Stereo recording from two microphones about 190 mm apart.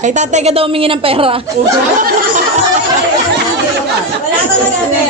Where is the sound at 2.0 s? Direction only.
45° right (ahead or behind).